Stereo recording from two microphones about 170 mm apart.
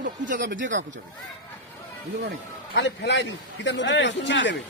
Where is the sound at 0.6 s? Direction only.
90° right.